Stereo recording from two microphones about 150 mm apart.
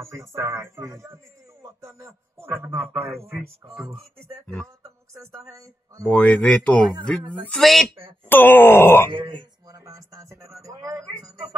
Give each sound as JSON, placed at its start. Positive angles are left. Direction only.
{"t": 0.1, "sound": "speech", "side_deg": -20}
{"t": 6.0, "sound": "speech", "side_deg": 10}
{"t": 8.3, "sound": "speech", "side_deg": 15}
{"t": 9.1, "sound": "speech", "side_deg": -30}